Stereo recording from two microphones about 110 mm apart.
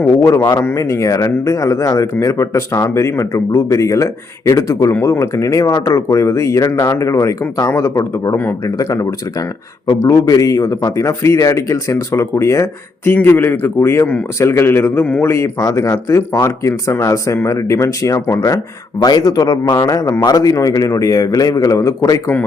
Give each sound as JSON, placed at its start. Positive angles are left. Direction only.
{"t": 0.2, "sound": "speech", "side_deg": 30}
{"t": 15.3, "sound": "speech", "side_deg": 30}